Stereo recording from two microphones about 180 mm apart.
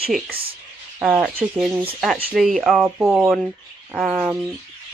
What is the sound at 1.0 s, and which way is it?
Speech, centre (ahead or behind).